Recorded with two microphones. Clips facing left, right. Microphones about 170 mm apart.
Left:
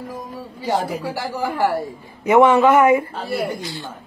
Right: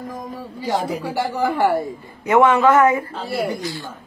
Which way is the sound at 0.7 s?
5° left (ahead or behind).